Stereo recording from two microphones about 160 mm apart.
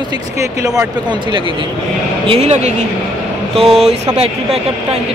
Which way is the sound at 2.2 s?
40° right (ahead or behind).